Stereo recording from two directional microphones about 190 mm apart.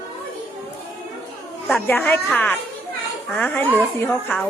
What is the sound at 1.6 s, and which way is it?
A woman's voice, 5° left (ahead or behind).